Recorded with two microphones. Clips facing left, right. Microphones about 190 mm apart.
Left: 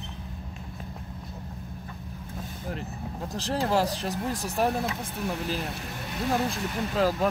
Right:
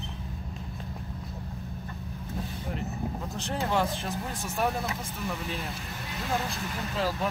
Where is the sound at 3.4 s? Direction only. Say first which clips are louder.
Left 3 dB; 35° left (ahead or behind).